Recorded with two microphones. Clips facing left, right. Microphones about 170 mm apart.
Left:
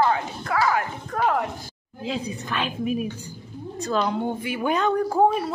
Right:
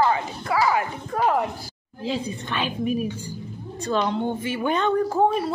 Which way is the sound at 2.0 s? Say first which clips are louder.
Right 1 dB; centre (ahead or behind).